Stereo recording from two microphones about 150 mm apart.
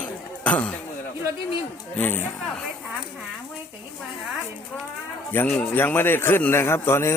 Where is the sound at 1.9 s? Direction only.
15° left (ahead or behind).